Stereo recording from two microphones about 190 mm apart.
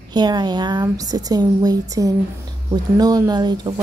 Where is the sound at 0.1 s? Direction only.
20° right (ahead or behind).